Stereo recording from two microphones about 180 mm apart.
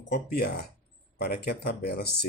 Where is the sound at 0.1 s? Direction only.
60° left (ahead or behind).